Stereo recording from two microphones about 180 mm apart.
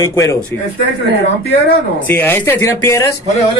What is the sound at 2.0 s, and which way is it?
Speech, 10° left (ahead or behind).